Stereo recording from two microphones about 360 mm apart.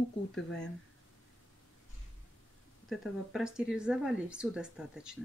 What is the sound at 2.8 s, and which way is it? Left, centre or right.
Speech, centre.